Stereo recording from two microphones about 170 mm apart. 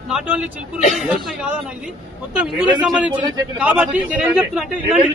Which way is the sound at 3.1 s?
30° right (ahead or behind).